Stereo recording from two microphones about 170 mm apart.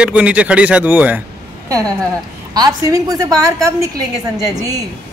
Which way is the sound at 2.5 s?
20° right (ahead or behind).